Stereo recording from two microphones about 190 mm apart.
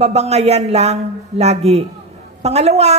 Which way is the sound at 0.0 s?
35° right (ahead or behind).